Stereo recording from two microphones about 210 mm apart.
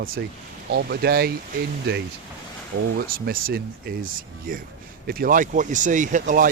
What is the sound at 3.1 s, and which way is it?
Speech, 45° right (ahead or behind).